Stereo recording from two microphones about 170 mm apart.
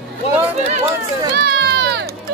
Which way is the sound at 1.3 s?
70° right (ahead or behind).